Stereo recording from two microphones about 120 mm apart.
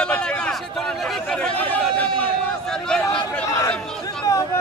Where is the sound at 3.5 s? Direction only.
30° left (ahead or behind).